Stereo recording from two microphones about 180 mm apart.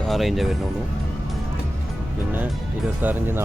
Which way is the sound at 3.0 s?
10° right (ahead or behind).